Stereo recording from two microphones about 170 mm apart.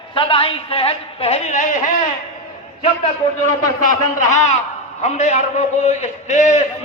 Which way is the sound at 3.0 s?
45° left (ahead or behind).